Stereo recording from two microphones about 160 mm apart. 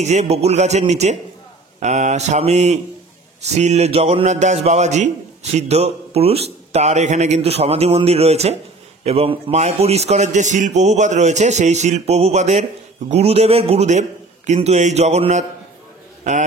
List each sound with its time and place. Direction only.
0.0 s a man's voice: 45° right (ahead or behind)